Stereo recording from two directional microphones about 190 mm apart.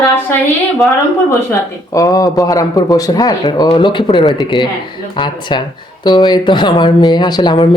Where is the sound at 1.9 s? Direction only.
20° left (ahead or behind).